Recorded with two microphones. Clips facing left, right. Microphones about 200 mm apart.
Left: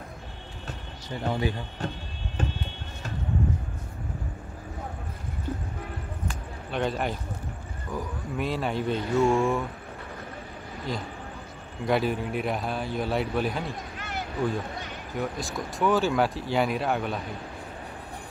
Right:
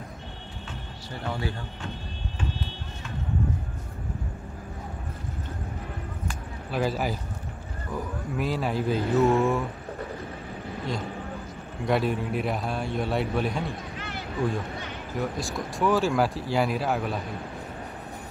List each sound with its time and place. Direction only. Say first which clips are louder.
1.2 s speech: left 4 dB; 20° left (ahead or behind)
6.7 s speech: right 1 dB; 5° right (ahead or behind)
11.8 s speech: even; centre (ahead or behind)
13.9 s a sound: left 1 dB; 45° left (ahead or behind)
15.1 s speech: right 1 dB; centre (ahead or behind)